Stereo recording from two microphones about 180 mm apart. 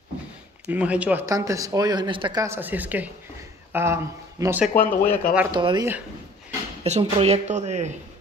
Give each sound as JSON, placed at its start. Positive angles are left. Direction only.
{"t": 0.7, "sound": "speech", "side_deg": -5}
{"t": 1.2, "sound": "speech", "side_deg": -20}
{"t": 2.4, "sound": "speech", "side_deg": -10}
{"t": 4.7, "sound": "speech", "side_deg": 10}
{"t": 5.5, "sound": "speech", "side_deg": -25}